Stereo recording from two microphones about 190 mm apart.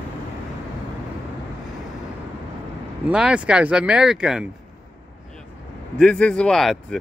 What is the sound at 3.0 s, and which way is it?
Speech, 5° right (ahead or behind).